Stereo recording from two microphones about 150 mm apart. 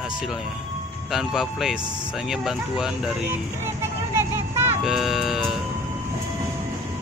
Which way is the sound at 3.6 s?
15° right (ahead or behind).